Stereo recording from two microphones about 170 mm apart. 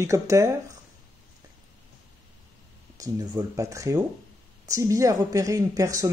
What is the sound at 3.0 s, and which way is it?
Speech, 20° right (ahead or behind).